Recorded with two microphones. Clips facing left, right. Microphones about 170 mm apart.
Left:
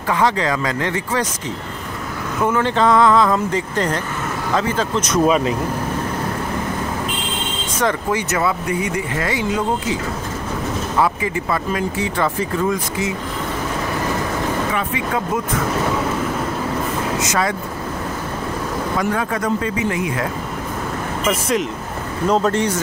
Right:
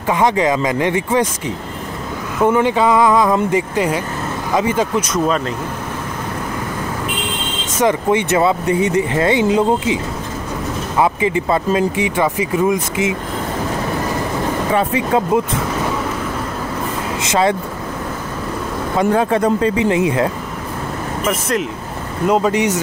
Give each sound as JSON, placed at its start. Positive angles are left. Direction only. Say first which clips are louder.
{"t": 0.1, "sound": "speech", "louder": "right 3 dB", "side_deg": -15}
{"t": 2.4, "sound": "speech", "louder": "right 3 dB", "side_deg": -15}
{"t": 5.2, "sound": "speech", "louder": "left 5 dB", "side_deg": 10}
{"t": 7.8, "sound": "speech", "louder": "right 5 dB", "side_deg": -25}
{"t": 11.0, "sound": "speech", "louder": "right 4 dB", "side_deg": -20}
{"t": 14.7, "sound": "speech", "louder": "right 6 dB", "side_deg": -30}
{"t": 17.3, "sound": "speech", "louder": "right 8 dB", "side_deg": -25}
{"t": 18.9, "sound": "speech", "louder": "right 8 dB", "side_deg": -30}
{"t": 21.3, "sound": "speech", "louder": "even", "side_deg": 0}